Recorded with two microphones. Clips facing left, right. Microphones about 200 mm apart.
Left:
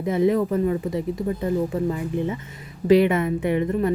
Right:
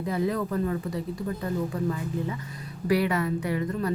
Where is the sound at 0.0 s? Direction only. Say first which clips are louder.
Left 7 dB; 20° left (ahead or behind).